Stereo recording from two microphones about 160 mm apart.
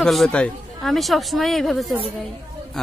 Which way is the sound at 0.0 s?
Centre (ahead or behind).